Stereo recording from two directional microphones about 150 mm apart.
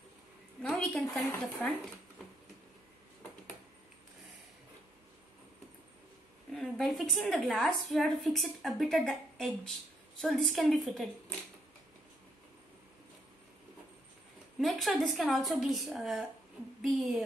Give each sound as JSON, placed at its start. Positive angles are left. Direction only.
{"t": 0.6, "sound": "a woman's voice", "side_deg": 5}
{"t": 6.5, "sound": "a woman's voice", "side_deg": 0}
{"t": 14.6, "sound": "a woman's voice", "side_deg": 0}